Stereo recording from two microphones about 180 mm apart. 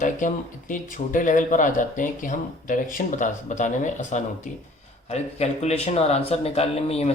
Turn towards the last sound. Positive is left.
turn(degrees=35)  # may be behind; listen again after turning